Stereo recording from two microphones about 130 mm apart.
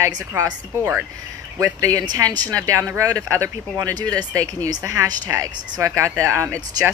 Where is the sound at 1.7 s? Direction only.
25° right (ahead or behind).